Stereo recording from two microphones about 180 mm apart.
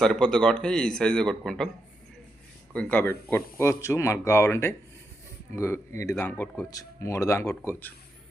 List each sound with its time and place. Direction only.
0.0 s speech: 5° left (ahead or behind)
2.7 s speech: 10° left (ahead or behind)